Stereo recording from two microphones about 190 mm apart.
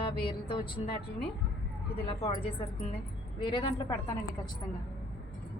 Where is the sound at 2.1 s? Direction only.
25° left (ahead or behind).